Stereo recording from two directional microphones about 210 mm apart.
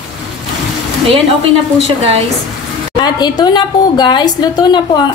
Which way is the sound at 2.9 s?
20° left (ahead or behind).